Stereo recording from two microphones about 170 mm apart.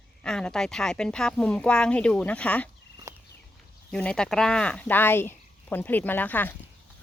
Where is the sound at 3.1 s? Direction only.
15° right (ahead or behind).